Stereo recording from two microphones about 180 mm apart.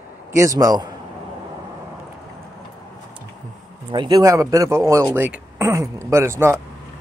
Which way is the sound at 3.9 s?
25° right (ahead or behind).